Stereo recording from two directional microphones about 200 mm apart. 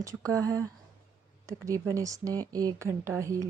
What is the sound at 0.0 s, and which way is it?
Speech, 15° right (ahead or behind).